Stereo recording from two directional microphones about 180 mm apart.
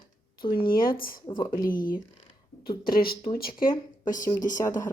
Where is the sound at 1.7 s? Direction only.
50° left (ahead or behind).